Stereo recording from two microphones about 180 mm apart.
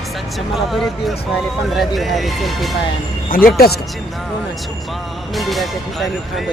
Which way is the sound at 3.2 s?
55° left (ahead or behind).